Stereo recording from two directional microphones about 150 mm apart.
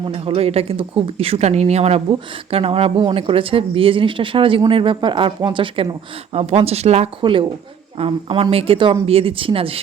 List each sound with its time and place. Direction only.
0.0 s speech: 40° right (ahead or behind)